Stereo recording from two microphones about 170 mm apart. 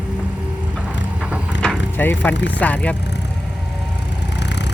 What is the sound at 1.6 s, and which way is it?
Vehicle, 10° left (ahead or behind).